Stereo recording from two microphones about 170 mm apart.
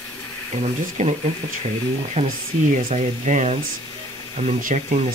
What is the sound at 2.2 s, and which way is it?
Speech, 35° right (ahead or behind).